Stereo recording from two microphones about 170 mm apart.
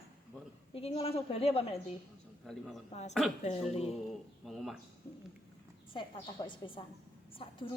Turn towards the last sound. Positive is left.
turn(degrees=30)  # may be behind; listen again after turning